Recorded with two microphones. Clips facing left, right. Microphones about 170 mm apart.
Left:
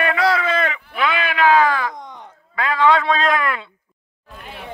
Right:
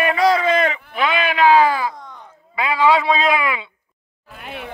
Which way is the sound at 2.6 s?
10° right (ahead or behind).